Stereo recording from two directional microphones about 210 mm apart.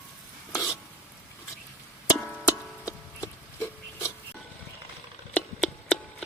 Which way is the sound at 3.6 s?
10° left (ahead or behind).